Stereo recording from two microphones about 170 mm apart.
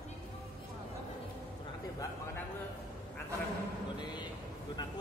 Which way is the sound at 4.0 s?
25° left (ahead or behind).